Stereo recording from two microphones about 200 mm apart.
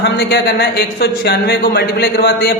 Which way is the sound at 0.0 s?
55° left (ahead or behind).